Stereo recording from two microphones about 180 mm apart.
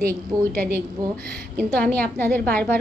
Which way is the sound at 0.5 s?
55° right (ahead or behind).